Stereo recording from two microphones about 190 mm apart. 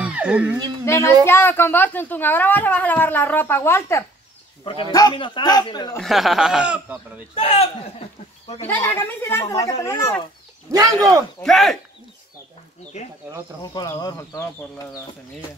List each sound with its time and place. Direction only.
0.0 s a sound: 5° right (ahead or behind)
0.8 s speech: 15° left (ahead or behind)
5.9 s speech: centre (ahead or behind)
7.3 s speech: 30° left (ahead or behind)
8.5 s speech: 10° left (ahead or behind)
10.7 s speech: 20° right (ahead or behind)
11.4 s speech: centre (ahead or behind)
13.6 s speech: 20° left (ahead or behind)